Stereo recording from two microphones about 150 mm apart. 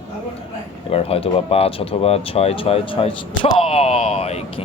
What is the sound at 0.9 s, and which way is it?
Speech, 40° left (ahead or behind).